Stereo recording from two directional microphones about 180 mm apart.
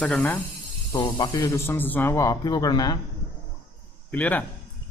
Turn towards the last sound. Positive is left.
turn(degrees=10)  # may be behind; listen again after turning